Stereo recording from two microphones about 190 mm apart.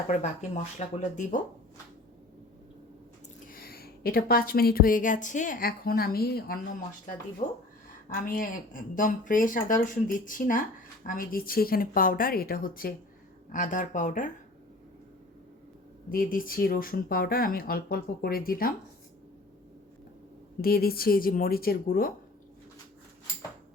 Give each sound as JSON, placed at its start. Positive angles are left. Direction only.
{"t": 0.1, "sound": "speech", "side_deg": 40}
{"t": 3.4, "sound": "a woman's voice", "side_deg": 50}
{"t": 8.1, "sound": "speech", "side_deg": 45}
{"t": 16.0, "sound": "speech", "side_deg": 50}
{"t": 20.6, "sound": "speech", "side_deg": 50}